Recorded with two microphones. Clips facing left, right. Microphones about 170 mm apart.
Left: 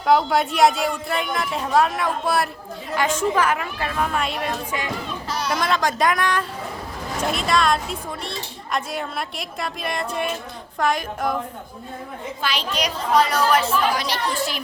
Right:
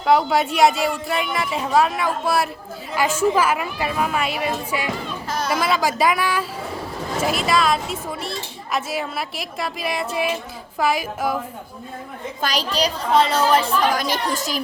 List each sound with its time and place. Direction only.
0.0 s a woman's voice: centre (ahead or behind)
12.4 s a child's voice: 40° right (ahead or behind)
13.9 s a woman's voice: 45° right (ahead or behind)